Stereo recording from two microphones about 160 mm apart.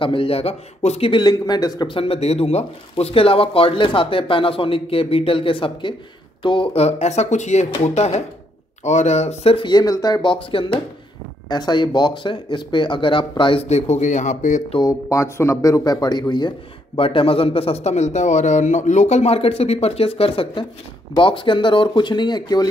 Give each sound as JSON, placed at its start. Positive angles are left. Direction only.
{"t": 0.0, "sound": "speech", "side_deg": 35}
{"t": 14.7, "sound": "speech", "side_deg": 25}